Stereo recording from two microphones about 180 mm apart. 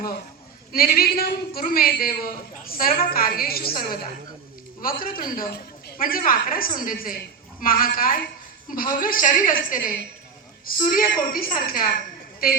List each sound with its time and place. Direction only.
0.7 s a man's voice: 55° left (ahead or behind)